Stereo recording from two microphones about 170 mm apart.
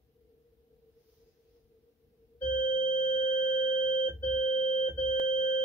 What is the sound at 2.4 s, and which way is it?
Doorbell, 50° left (ahead or behind).